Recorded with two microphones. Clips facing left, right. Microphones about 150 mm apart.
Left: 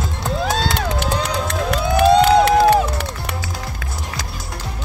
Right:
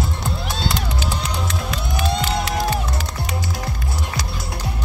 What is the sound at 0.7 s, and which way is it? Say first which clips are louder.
Music: left 4 dB; 80° left.